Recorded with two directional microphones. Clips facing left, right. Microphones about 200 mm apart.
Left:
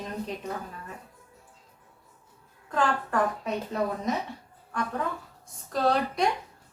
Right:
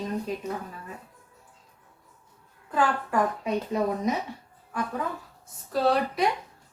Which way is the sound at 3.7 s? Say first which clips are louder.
Right 2 dB; 10° right (ahead or behind).